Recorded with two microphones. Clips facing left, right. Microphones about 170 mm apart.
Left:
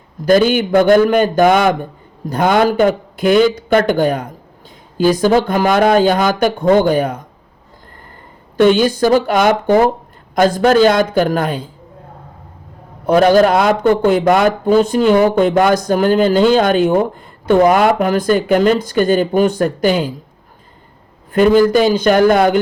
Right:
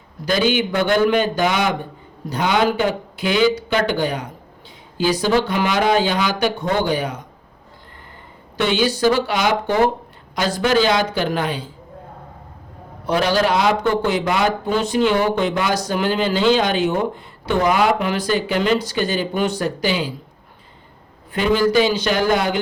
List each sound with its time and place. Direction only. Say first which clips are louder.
0.3 s speech: left 7 dB; 50° left (ahead or behind)
8.5 s speech: left 8 dB; 45° left (ahead or behind)
13.1 s speech: left 8 dB; 50° left (ahead or behind)
21.3 s speech: left 6 dB; 45° left (ahead or behind)